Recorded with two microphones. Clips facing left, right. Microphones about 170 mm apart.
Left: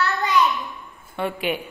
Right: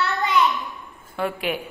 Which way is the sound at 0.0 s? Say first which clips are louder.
Left 1 dB; 25° right (ahead or behind).